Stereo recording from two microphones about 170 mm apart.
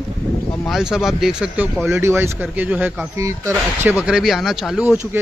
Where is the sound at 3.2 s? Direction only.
15° right (ahead or behind).